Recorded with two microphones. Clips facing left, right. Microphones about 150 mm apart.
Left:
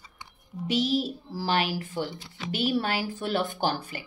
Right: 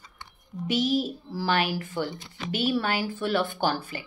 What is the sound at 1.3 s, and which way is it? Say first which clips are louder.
Speech: right 1 dB; 40° left (ahead or behind).